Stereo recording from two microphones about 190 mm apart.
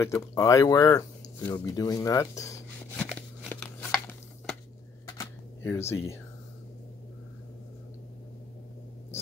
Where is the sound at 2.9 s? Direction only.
5° left (ahead or behind).